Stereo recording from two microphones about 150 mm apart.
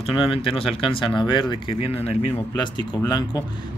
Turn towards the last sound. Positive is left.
turn(degrees=25)  # may be behind; listen again after turning